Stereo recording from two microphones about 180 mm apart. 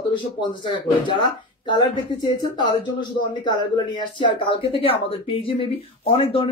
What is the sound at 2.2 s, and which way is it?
Speech, 25° left (ahead or behind).